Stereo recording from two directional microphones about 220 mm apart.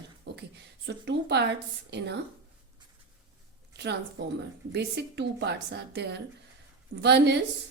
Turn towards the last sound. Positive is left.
turn(degrees=-50)  # may be behind; listen again after turning